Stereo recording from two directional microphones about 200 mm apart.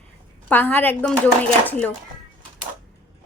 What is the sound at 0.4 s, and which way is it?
Speech, 10° left (ahead or behind).